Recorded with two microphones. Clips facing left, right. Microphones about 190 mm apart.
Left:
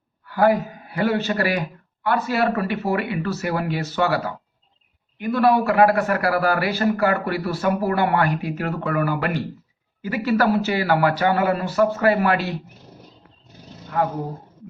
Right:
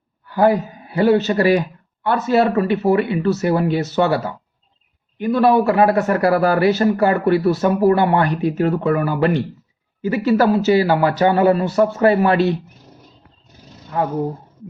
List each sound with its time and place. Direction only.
0.3 s a man's voice: 20° right (ahead or behind)